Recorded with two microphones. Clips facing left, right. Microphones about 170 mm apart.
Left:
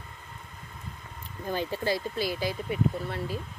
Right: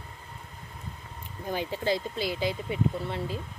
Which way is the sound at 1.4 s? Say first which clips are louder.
Even; 15° right (ahead or behind).